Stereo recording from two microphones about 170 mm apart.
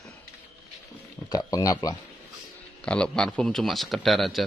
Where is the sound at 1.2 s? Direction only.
20° left (ahead or behind).